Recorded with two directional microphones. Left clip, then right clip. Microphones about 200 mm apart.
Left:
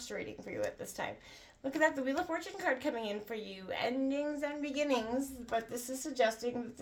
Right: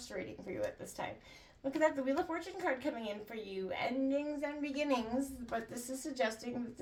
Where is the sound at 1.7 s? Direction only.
35° left (ahead or behind).